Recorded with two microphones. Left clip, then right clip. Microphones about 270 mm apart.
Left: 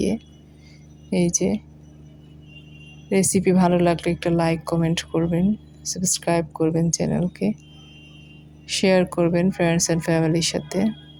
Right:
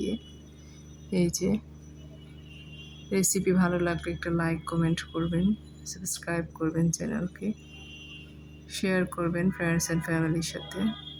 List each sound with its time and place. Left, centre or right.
1.1 s a woman's voice: centre
3.1 s a woman's voice: centre
8.6 s speech: centre